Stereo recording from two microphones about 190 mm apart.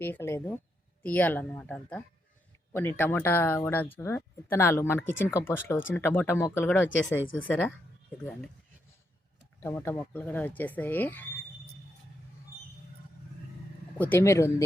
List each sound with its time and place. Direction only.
0.0 s speech: 10° left (ahead or behind)
7.2 s speech: 90° left
7.4 s speech: 10° left (ahead or behind)
9.6 s speech: 10° left (ahead or behind)
14.0 s speech: 10° left (ahead or behind)